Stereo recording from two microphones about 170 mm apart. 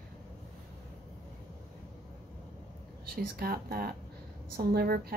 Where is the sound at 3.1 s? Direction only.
60° right (ahead or behind).